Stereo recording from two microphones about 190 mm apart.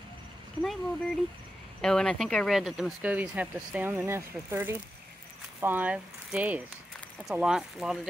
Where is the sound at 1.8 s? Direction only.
5° left (ahead or behind).